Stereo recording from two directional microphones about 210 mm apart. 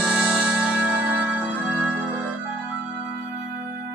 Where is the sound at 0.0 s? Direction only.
5° right (ahead or behind).